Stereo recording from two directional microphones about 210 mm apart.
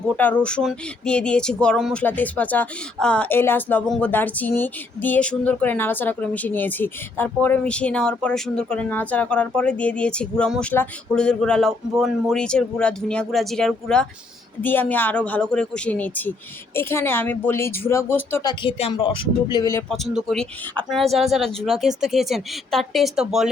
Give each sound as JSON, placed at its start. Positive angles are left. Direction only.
{"t": 0.2, "sound": "a woman's voice", "side_deg": 5}
{"t": 18.6, "sound": "speech", "side_deg": 25}
{"t": 19.9, "sound": "speech", "side_deg": 0}